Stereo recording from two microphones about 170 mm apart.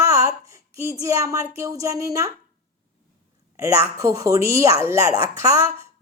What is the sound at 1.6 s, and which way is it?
Speech, 20° right (ahead or behind).